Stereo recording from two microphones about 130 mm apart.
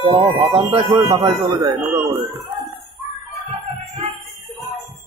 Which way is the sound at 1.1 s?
30° right (ahead or behind).